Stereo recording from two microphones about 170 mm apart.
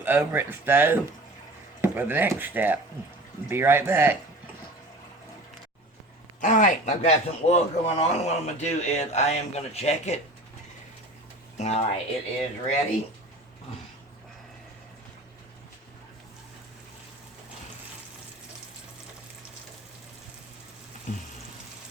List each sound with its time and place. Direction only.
0.0 s speech: 10° right (ahead or behind)
6.4 s a man's voice: 50° left (ahead or behind)
11.5 s a man's voice: 40° left (ahead or behind)